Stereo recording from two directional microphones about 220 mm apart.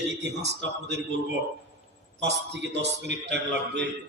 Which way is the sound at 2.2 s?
50° right (ahead or behind).